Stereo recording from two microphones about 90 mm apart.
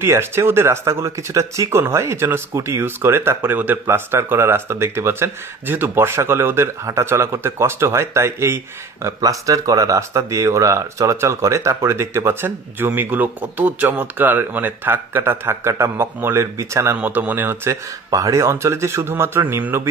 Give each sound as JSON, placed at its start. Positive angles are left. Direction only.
{"t": 0.0, "sound": "speech", "side_deg": -30}
{"t": 17.0, "sound": "speech", "side_deg": -20}
{"t": 17.6, "sound": "speech", "side_deg": -35}